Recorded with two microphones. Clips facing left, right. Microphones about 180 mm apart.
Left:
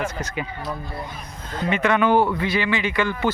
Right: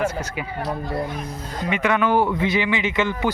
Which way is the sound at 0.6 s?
70° right (ahead or behind).